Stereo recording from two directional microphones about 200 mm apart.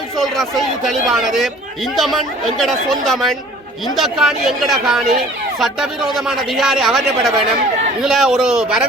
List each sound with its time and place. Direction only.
0.2 s speech: centre (ahead or behind)